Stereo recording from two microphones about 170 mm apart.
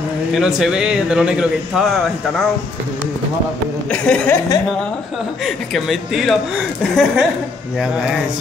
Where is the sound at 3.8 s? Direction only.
5° left (ahead or behind).